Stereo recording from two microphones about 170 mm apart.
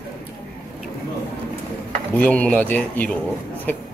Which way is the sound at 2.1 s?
10° left (ahead or behind).